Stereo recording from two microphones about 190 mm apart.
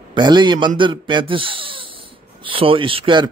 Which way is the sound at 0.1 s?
25° right (ahead or behind).